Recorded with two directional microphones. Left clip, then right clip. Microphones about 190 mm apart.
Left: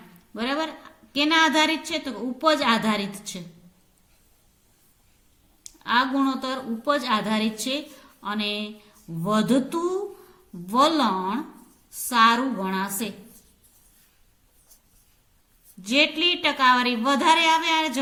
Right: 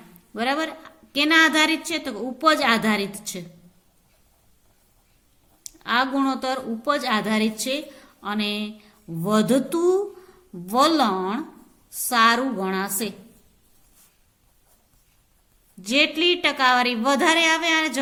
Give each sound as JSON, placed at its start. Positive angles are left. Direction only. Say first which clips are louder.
{"t": 0.3, "sound": "a woman's voice", "louder": "right 3 dB", "side_deg": -35}
{"t": 5.6, "sound": "a woman's voice", "louder": "even", "side_deg": -35}
{"t": 15.8, "sound": "a woman's voice", "louder": "right 1 dB", "side_deg": -35}